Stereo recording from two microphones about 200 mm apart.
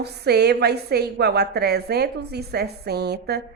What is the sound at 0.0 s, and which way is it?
Speech, 55° right (ahead or behind).